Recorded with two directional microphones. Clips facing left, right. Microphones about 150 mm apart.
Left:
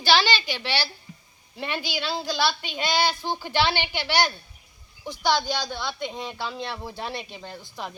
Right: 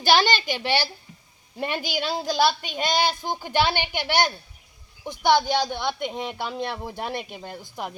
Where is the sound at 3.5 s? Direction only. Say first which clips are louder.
Right 2 dB; 45° right (ahead or behind).